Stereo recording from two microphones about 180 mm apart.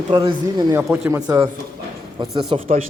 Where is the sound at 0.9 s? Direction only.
5° right (ahead or behind).